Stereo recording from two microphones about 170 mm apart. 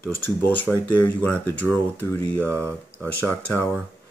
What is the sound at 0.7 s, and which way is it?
Speech, 10° left (ahead or behind).